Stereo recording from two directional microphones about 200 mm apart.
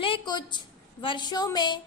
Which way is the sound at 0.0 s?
25° left (ahead or behind).